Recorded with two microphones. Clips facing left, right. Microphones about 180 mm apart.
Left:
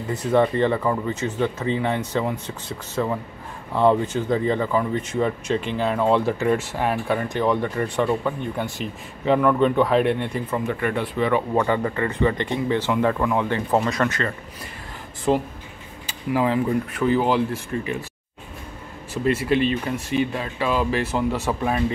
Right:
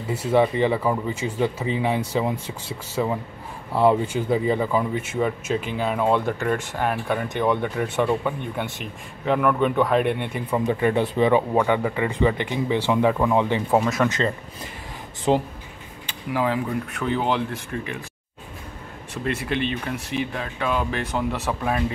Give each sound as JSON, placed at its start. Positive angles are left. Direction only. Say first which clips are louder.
{"t": 0.1, "sound": "speech", "louder": "even", "side_deg": -5}
{"t": 10.6, "sound": "speech", "louder": "right 7 dB", "side_deg": -20}
{"t": 11.5, "sound": "speech", "louder": "right 1 dB", "side_deg": -5}
{"t": 13.7, "sound": "speech", "louder": "right 1 dB", "side_deg": -5}
{"t": 14.0, "sound": "speech", "louder": "right 2 dB", "side_deg": -20}
{"t": 16.1, "sound": "speech", "louder": "left 2 dB", "side_deg": 0}
{"t": 19.2, "sound": "speech", "louder": "left 5 dB", "side_deg": 0}